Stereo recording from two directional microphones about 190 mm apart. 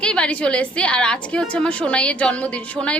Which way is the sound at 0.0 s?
5° left (ahead or behind).